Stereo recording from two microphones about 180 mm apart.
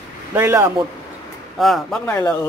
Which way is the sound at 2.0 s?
10° left (ahead or behind).